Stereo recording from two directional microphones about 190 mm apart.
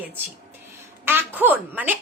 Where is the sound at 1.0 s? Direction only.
10° right (ahead or behind).